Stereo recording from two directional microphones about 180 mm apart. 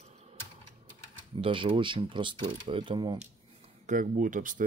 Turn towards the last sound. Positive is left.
turn(degrees=-45)  # may be behind; listen again after turning